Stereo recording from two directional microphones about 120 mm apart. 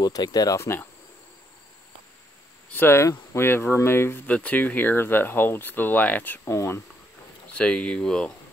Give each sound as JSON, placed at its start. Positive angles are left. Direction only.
{"t": 0.0, "sound": "speech", "side_deg": 35}
{"t": 2.7, "sound": "speech", "side_deg": 20}
{"t": 7.5, "sound": "speech", "side_deg": 10}